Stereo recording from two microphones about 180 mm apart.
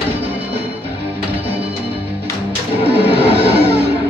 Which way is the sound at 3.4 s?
65° right (ahead or behind).